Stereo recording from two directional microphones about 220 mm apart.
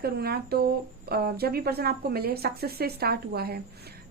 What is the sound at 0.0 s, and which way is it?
Speech, 45° right (ahead or behind).